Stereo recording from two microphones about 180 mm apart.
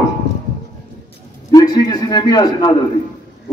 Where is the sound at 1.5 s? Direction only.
20° left (ahead or behind).